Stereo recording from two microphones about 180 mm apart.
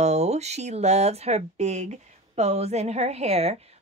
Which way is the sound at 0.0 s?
40° right (ahead or behind).